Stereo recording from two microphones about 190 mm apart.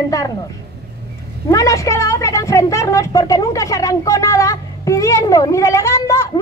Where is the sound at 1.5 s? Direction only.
15° left (ahead or behind).